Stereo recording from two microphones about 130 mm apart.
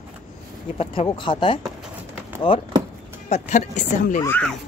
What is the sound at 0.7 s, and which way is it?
Speech, 45° left (ahead or behind).